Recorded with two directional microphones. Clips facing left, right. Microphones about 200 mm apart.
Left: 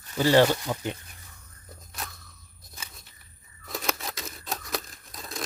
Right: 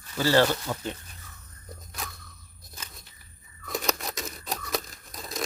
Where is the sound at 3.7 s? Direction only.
Centre (ahead or behind).